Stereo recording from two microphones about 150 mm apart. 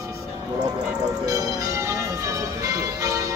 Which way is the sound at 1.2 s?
20° right (ahead or behind).